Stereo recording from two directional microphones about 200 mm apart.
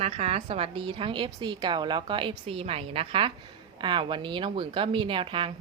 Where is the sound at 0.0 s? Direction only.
30° right (ahead or behind).